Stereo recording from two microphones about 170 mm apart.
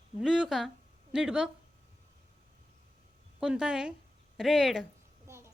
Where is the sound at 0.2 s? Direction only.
Centre (ahead or behind).